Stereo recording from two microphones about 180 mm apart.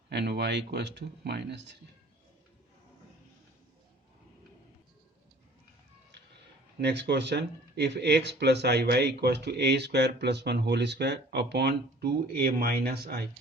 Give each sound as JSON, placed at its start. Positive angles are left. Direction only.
{"t": 0.1, "sound": "speech", "side_deg": -65}
{"t": 6.8, "sound": "speech", "side_deg": -70}